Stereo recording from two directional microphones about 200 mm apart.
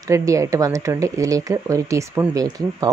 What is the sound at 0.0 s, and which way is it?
Speech, 15° right (ahead or behind).